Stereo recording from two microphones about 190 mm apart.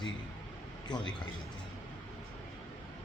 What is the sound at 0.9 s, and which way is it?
Speech, 5° left (ahead or behind).